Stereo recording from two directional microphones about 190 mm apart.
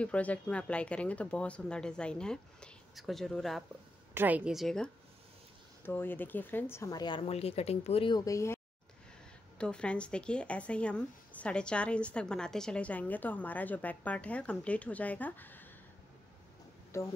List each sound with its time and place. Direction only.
0.0 s speech: 5° left (ahead or behind)
4.1 s speech: 10° right (ahead or behind); by 8.5 s 15° left (ahead or behind)
9.6 s speech: 5° left (ahead or behind)
16.9 s speech: 15° left (ahead or behind)